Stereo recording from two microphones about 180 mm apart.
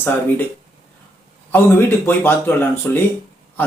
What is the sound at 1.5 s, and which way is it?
Speech, 15° left (ahead or behind).